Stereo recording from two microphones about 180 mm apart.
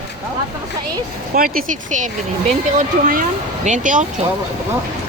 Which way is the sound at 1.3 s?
50° right (ahead or behind).